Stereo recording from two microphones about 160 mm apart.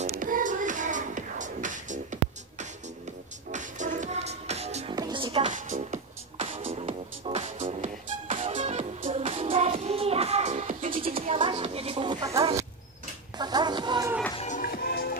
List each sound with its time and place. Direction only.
0.2 s music: 55° right (ahead or behind)
3.5 s music: 50° right (ahead or behind)
4.9 s music: 30° right (ahead or behind)
5.5 s music: 50° right (ahead or behind)
6.4 s music: 35° right (ahead or behind); by 11.1 s 55° right (ahead or behind)
11.1 s music: 35° right (ahead or behind)
14.6 s music: 70° left (ahead or behind)